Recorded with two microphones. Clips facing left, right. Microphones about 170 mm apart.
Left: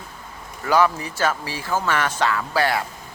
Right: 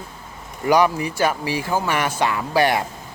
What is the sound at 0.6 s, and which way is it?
Speech, 15° right (ahead or behind).